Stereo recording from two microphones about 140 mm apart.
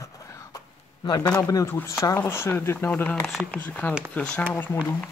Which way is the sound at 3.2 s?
Centre (ahead or behind).